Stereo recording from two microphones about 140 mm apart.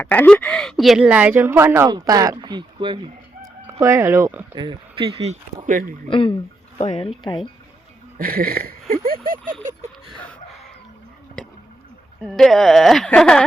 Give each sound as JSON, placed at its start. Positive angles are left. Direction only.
{"t": 0.0, "sound": "speech", "side_deg": 10}
{"t": 3.7, "sound": "speech", "side_deg": -20}
{"t": 4.5, "sound": "speech", "side_deg": -35}
{"t": 5.6, "sound": "speech", "side_deg": -70}
{"t": 6.1, "sound": "speech", "side_deg": 40}
{"t": 8.2, "sound": "speech", "side_deg": -90}
{"t": 12.2, "sound": "speech", "side_deg": 0}